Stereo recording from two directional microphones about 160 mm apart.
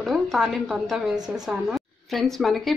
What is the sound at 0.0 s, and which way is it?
A woman's voice, centre (ahead or behind).